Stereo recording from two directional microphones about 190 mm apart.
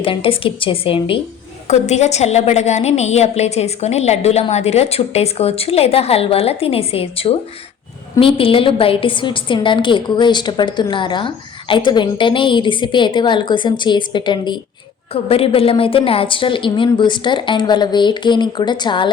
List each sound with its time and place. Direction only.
0.0 s a woman's voice: 30° left (ahead or behind)